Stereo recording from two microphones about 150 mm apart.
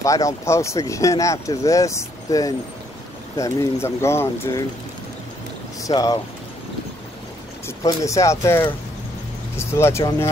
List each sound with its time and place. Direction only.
0.0 s speech: 20° left (ahead or behind)
5.9 s speech: 25° left (ahead or behind)
7.6 s speech: 20° left (ahead or behind)